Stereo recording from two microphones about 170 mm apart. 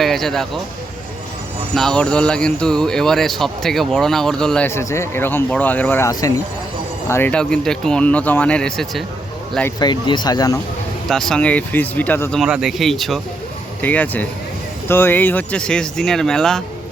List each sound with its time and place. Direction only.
0.0 s speech: centre (ahead or behind)
1.7 s speech: 5° left (ahead or behind); by 6.4 s 20° left (ahead or behind)
7.1 s speech: 10° left (ahead or behind)
9.8 s speech: 25° left (ahead or behind)
11.1 s speech: 5° left (ahead or behind)
12.4 s speech: 5° right (ahead or behind)